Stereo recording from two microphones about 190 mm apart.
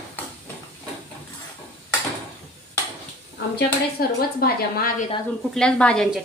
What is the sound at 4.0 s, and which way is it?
A woman's voice, 50° left (ahead or behind).